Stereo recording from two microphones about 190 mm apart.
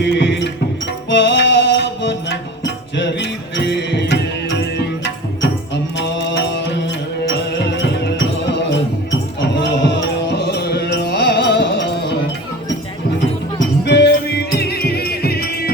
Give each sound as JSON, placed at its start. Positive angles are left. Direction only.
{"t": 0.0, "sound": "music", "side_deg": 65}
{"t": 13.8, "sound": "music", "side_deg": 65}